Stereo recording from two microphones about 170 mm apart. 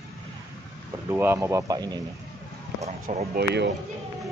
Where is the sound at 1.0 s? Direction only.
15° right (ahead or behind).